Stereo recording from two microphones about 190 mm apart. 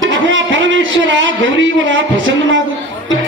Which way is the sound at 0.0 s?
90° right.